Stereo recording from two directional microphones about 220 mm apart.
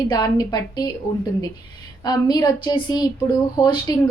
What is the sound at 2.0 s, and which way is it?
A woman's voice, 20° left (ahead or behind).